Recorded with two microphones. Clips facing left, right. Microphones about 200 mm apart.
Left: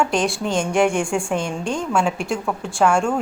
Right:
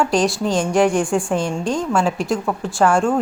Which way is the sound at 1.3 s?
35° right (ahead or behind).